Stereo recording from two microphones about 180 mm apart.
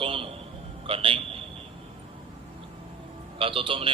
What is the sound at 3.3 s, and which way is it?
Speech, 30° right (ahead or behind).